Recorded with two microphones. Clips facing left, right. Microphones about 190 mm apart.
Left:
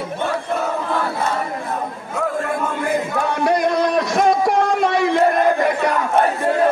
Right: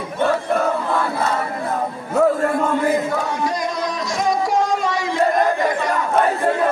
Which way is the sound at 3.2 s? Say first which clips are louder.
Left 4 dB; 60° left (ahead or behind).